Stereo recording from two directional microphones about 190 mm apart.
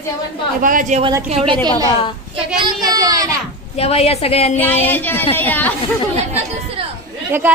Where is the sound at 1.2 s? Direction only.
30° right (ahead or behind).